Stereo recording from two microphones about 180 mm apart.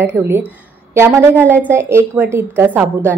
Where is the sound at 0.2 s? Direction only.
15° right (ahead or behind).